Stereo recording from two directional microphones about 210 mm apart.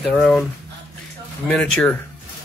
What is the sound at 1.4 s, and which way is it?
Speech, 5° left (ahead or behind).